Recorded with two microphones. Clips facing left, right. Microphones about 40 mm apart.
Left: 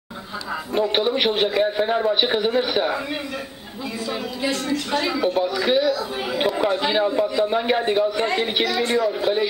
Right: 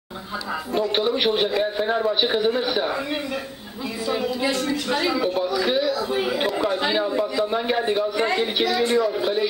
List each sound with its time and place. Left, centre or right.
0.7 s a man's voice: centre
4.1 s a man's voice: centre
7.4 s a man's voice: centre